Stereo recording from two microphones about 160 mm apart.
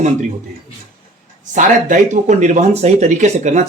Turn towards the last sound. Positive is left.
turn(degrees=-50)  # may be behind; listen again after turning